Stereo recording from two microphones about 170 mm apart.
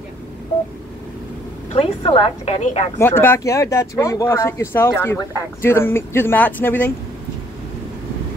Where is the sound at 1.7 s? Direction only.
35° left (ahead or behind).